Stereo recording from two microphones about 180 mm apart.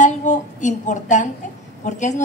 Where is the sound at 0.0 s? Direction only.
45° left (ahead or behind).